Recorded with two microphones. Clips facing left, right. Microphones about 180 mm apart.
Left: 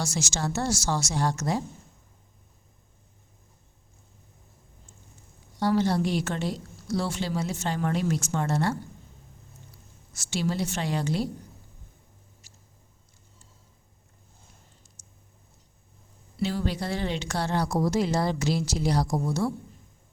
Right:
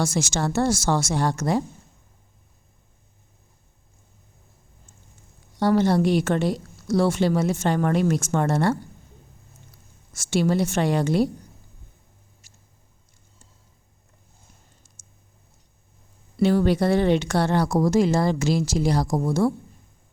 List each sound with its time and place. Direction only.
0.0 s a woman's voice: 55° right (ahead or behind)
5.5 s a woman's voice: 55° right (ahead or behind)
10.2 s a woman's voice: 50° right (ahead or behind)
16.4 s a woman's voice: 60° right (ahead or behind)
17.8 s speech: 45° right (ahead or behind)